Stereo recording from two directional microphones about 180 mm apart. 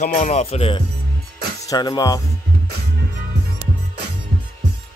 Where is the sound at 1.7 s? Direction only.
20° left (ahead or behind).